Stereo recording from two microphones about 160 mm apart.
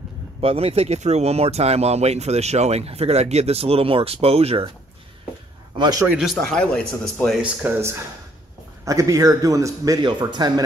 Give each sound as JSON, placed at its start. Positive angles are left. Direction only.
{"t": 0.4, "sound": "speech", "side_deg": -40}
{"t": 5.8, "sound": "a man's voice", "side_deg": -25}
{"t": 6.0, "sound": "speech", "side_deg": -5}
{"t": 6.3, "sound": "speech", "side_deg": 5}
{"t": 7.6, "sound": "speech", "side_deg": -15}